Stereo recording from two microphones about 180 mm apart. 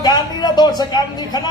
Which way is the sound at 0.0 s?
20° left (ahead or behind).